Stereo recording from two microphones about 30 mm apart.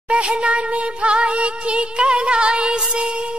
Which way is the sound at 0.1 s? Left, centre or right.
Right.